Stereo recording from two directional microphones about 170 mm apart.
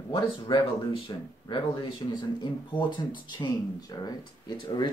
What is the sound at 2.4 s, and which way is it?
Speech, 25° left (ahead or behind).